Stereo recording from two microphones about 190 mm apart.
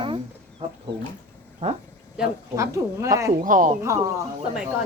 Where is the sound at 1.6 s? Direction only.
40° right (ahead or behind).